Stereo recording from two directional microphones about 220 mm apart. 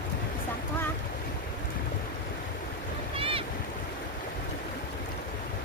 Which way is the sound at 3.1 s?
25° right (ahead or behind).